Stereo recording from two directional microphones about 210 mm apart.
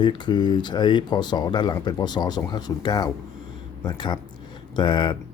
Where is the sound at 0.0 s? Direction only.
20° left (ahead or behind).